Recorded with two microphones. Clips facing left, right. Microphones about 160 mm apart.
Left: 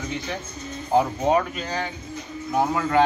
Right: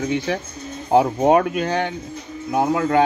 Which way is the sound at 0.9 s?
60° right (ahead or behind).